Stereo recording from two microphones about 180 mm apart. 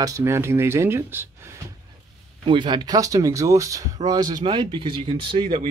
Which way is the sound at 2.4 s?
25° right (ahead or behind).